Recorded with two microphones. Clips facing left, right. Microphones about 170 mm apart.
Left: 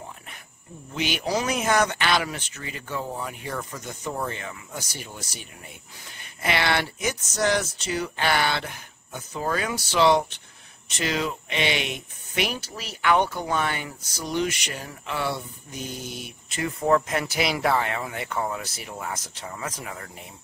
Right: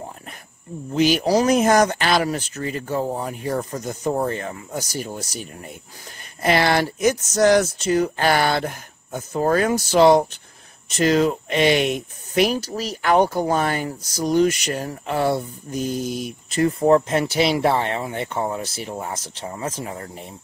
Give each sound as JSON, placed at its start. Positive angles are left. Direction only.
{"t": 0.9, "sound": "speech", "side_deg": -40}